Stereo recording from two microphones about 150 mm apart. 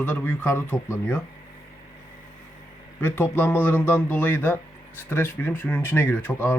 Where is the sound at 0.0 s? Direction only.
15° left (ahead or behind).